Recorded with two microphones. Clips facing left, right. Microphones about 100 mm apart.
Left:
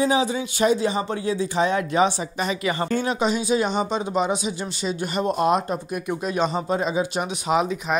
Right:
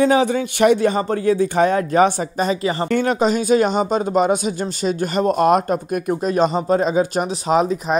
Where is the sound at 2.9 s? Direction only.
50° right (ahead or behind).